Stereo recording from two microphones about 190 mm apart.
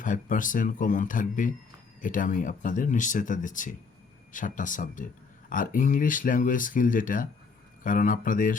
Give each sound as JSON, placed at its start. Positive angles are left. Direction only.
{"t": 0.0, "sound": "speech", "side_deg": 45}